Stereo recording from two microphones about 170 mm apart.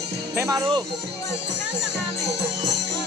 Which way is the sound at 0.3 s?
20° right (ahead or behind).